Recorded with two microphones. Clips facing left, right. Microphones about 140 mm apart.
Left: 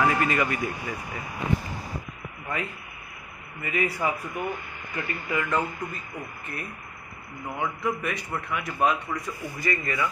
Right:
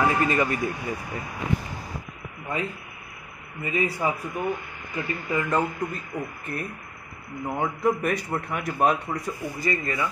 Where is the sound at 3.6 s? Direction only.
25° right (ahead or behind).